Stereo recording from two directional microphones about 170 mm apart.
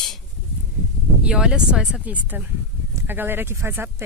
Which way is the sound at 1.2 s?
5° right (ahead or behind).